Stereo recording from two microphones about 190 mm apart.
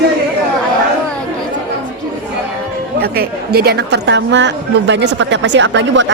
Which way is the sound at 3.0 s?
55° right (ahead or behind).